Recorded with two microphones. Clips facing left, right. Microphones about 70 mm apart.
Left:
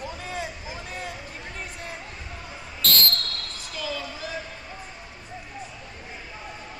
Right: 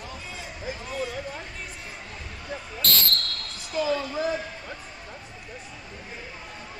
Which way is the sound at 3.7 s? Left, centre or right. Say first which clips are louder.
Right 8 dB; right.